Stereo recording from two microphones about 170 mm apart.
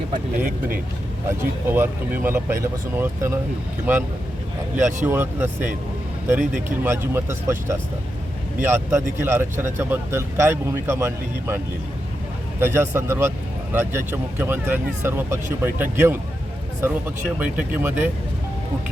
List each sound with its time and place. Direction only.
0.1 s speech: 50° right (ahead or behind)
1.3 s speech: 15° right (ahead or behind)
5.0 s speech: 10° right (ahead or behind)
6.4 s speech: 50° right (ahead or behind)
6.8 s speech: 15° right (ahead or behind)